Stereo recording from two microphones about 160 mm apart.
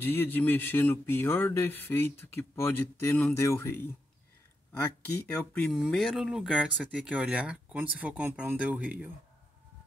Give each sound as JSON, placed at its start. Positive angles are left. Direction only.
{"t": 0.0, "sound": "speech", "side_deg": 15}
{"t": 5.3, "sound": "speech", "side_deg": 5}